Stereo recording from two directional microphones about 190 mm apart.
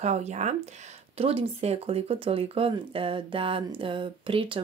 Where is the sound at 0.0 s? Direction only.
35° right (ahead or behind).